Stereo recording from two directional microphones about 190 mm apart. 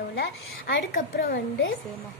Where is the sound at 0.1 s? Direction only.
60° left (ahead or behind).